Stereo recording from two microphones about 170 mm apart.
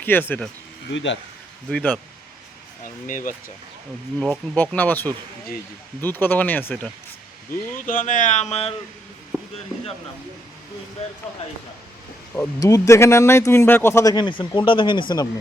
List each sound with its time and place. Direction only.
0.0 s speech: 10° left (ahead or behind)
0.9 s speech: 90° left
1.7 s speech: 10° left (ahead or behind)
2.8 s speech: 50° left (ahead or behind)
4.5 s speech: 10° left (ahead or behind)
7.8 s speech: 50° left (ahead or behind)
9.3 s a sound: 15° right (ahead or behind)
12.3 s speech: 15° left (ahead or behind)